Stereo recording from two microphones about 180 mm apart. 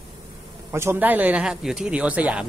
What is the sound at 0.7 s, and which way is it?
Speech, 10° right (ahead or behind).